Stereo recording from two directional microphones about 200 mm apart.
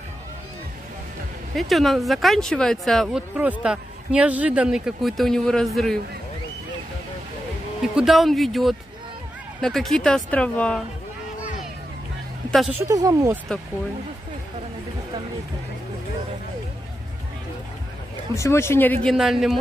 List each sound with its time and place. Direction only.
1.5 s speech: centre (ahead or behind)
7.8 s speech: centre (ahead or behind)
12.4 s speech: centre (ahead or behind)
12.8 s speech: 15° right (ahead or behind)
18.3 s speech: 15° left (ahead or behind)
19.1 s speech: centre (ahead or behind)